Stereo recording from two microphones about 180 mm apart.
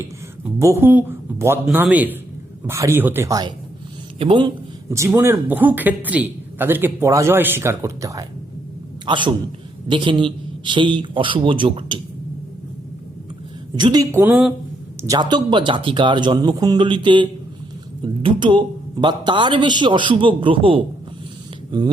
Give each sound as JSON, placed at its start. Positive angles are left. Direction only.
{"t": 0.6, "sound": "a man's voice", "side_deg": -15}
{"t": 4.9, "sound": "a man's voice", "side_deg": -15}
{"t": 13.7, "sound": "speech", "side_deg": -25}
{"t": 15.0, "sound": "a man's voice", "side_deg": -20}